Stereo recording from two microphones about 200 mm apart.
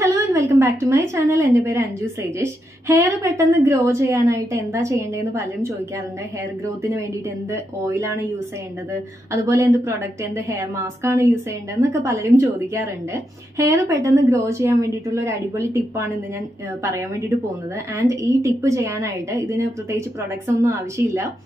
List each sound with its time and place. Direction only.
0.0 s a woman's voice: 15° right (ahead or behind)
17.9 s a woman's voice: 15° right (ahead or behind)